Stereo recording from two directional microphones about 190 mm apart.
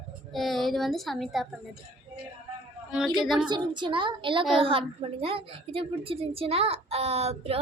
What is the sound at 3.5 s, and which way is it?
A woman's voice, 25° right (ahead or behind).